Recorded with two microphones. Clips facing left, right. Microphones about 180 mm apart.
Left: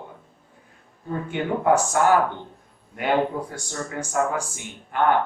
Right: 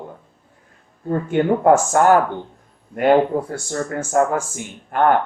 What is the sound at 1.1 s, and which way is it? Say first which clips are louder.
Speech: right 8 dB; 50° right (ahead or behind).